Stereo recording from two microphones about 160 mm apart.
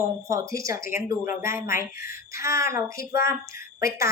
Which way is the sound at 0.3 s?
20° right (ahead or behind).